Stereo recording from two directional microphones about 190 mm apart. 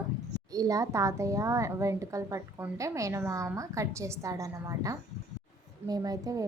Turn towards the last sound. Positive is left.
turn(degrees=-15)  # may be behind; listen again after turning